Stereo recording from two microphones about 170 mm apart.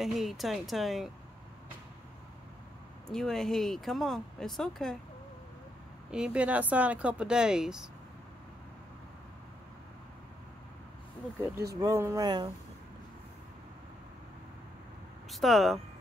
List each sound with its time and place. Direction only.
0.0 s speech: centre (ahead or behind)
3.1 s speech: 5° left (ahead or behind)
6.1 s speech: 5° right (ahead or behind)
11.7 s speech: 20° right (ahead or behind)
15.3 s speech: centre (ahead or behind)